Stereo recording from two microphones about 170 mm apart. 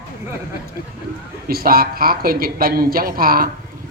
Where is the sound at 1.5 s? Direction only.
60° right (ahead or behind).